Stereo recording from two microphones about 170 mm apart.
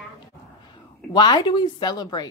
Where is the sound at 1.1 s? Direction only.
25° left (ahead or behind).